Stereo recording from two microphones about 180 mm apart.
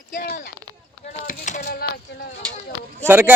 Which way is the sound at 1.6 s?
60° left (ahead or behind).